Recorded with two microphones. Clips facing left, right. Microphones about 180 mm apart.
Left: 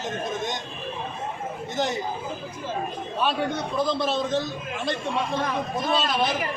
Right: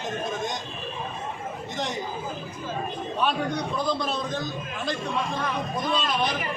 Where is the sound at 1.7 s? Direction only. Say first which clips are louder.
Left 5 dB; centre (ahead or behind).